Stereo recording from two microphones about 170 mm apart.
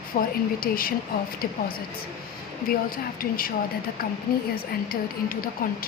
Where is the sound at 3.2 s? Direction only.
60° left (ahead or behind).